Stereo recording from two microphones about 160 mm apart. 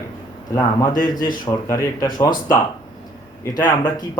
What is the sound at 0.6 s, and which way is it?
A man's voice, 20° left (ahead or behind).